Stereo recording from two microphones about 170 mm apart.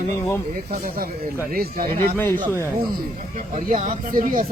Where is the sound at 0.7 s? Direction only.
55° right (ahead or behind).